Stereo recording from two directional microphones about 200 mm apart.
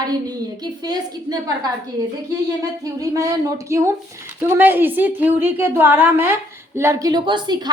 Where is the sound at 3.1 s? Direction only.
15° right (ahead or behind).